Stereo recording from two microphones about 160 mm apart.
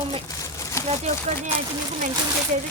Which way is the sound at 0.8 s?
20° left (ahead or behind).